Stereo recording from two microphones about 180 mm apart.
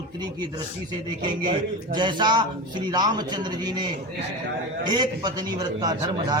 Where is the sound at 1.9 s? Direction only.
25° right (ahead or behind).